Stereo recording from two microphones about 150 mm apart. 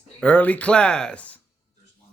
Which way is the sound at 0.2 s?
10° left (ahead or behind).